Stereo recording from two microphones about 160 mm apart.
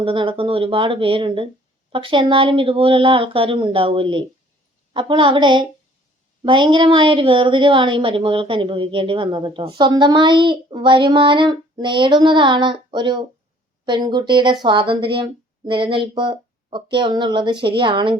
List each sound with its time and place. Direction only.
0.0 s a woman's voice: 35° right (ahead or behind)